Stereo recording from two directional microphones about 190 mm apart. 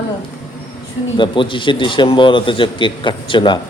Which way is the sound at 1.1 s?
25° left (ahead or behind).